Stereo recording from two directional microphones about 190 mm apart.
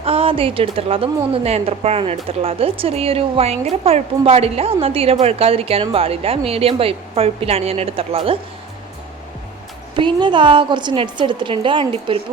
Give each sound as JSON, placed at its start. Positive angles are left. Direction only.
{"t": 0.0, "sound": "a woman's voice", "side_deg": -30}
{"t": 9.9, "sound": "a woman's voice", "side_deg": -25}